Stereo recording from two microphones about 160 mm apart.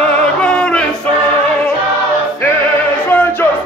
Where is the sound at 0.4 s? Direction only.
5° left (ahead or behind).